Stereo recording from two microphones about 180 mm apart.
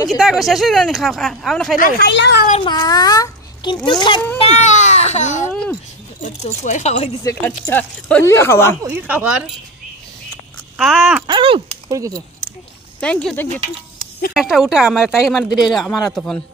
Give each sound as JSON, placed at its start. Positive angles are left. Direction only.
{"t": 0.2, "sound": "speech", "side_deg": 0}
{"t": 1.8, "sound": "speech", "side_deg": 65}
{"t": 2.6, "sound": "a child's voice", "side_deg": 20}
{"t": 4.4, "sound": "speech", "side_deg": 40}
{"t": 5.5, "sound": "speech", "side_deg": 5}
{"t": 6.2, "sound": "speech", "side_deg": 40}
{"t": 7.2, "sound": "speech", "side_deg": 15}
{"t": 8.8, "sound": "speech", "side_deg": -10}
{"t": 10.8, "sound": "a sound", "side_deg": 0}
{"t": 11.2, "sound": "a sound", "side_deg": -30}
{"t": 11.9, "sound": "speech", "side_deg": -20}
{"t": 13.0, "sound": "speech", "side_deg": 5}